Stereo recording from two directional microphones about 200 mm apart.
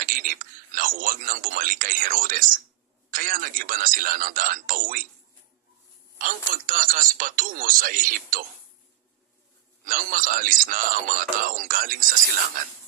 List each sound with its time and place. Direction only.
0.0 s speech: 45° right (ahead or behind)
6.1 s speech: 45° right (ahead or behind)
9.8 s speech: 45° right (ahead or behind)